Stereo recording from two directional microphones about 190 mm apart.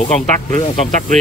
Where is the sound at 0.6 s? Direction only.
35° left (ahead or behind).